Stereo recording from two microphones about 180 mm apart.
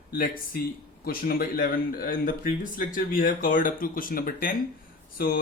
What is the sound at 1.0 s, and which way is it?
A man's voice, 55° left (ahead or behind).